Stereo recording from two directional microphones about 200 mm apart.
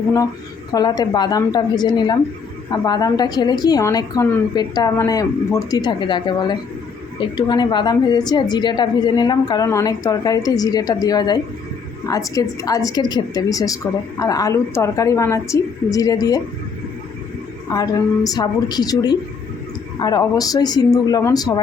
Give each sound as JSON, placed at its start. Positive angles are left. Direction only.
{"t": 0.7, "sound": "a woman's voice", "side_deg": 20}
{"t": 17.7, "sound": "a woman's voice", "side_deg": 20}